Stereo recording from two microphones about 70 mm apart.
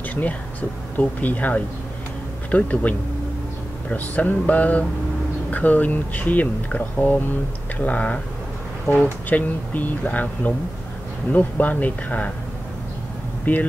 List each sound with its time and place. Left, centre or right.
0.1 s speech: left
13.5 s speech: left